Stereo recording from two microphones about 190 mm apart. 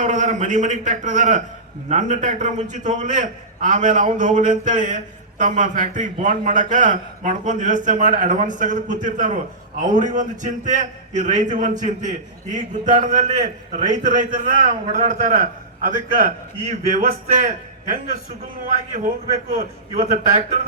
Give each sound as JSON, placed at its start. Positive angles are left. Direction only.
{"t": 0.0, "sound": "a man's voice", "side_deg": -40}
{"t": 16.9, "sound": "a man's voice", "side_deg": -45}